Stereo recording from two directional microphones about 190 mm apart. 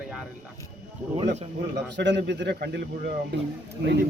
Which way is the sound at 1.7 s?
65° right (ahead or behind).